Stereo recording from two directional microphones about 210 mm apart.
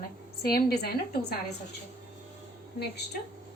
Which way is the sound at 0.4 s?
50° left (ahead or behind).